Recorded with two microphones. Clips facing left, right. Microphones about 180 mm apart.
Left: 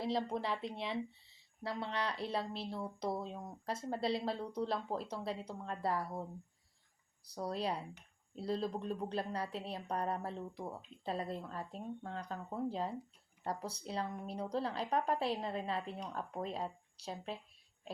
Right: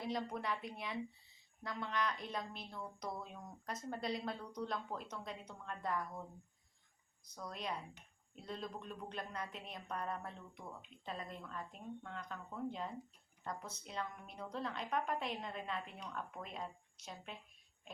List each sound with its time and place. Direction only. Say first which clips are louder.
0.0 s speech: left 4 dB; 30° left (ahead or behind)
7.3 s speech: left 7 dB; 35° left (ahead or behind)